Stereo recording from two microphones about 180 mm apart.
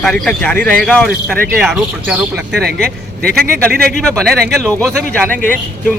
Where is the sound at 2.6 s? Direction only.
60° right (ahead or behind).